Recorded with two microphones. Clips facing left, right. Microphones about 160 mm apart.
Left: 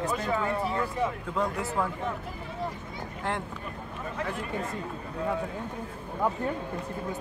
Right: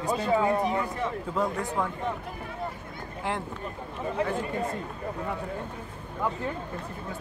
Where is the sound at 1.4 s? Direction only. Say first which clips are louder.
Even; centre (ahead or behind).